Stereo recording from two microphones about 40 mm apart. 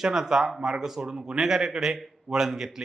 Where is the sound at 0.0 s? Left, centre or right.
Centre.